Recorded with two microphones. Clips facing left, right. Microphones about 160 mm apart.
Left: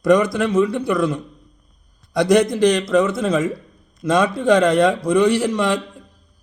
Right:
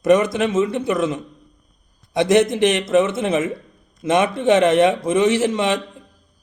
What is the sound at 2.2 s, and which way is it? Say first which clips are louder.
A man's voice: left 1 dB; 20° right (ahead or behind).